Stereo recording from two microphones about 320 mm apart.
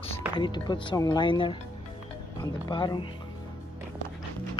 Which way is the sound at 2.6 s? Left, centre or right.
Centre.